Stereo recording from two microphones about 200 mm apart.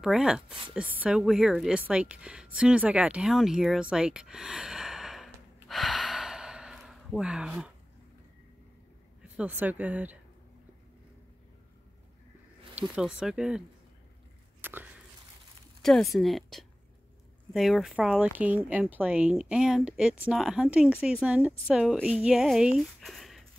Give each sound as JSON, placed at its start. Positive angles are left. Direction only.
{"t": 0.0, "sound": "speech", "side_deg": -5}
{"t": 0.5, "sound": "speech", "side_deg": -25}
{"t": 0.7, "sound": "a woman's voice", "side_deg": -5}
{"t": 9.4, "sound": "speech", "side_deg": -10}
{"t": 12.7, "sound": "speech", "side_deg": -5}
{"t": 14.6, "sound": "biting", "side_deg": -10}
{"t": 15.8, "sound": "speech", "side_deg": 0}